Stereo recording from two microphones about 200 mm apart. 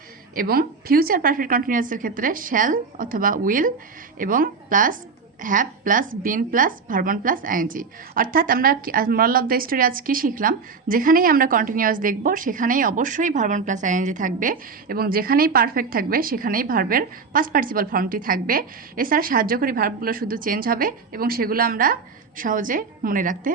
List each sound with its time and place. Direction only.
0.3 s a woman's voice: 50° right (ahead or behind)